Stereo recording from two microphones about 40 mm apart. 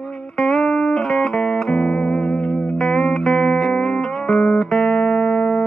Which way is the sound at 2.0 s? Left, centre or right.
Left.